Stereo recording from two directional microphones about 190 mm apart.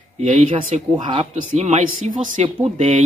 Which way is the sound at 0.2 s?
35° right (ahead or behind).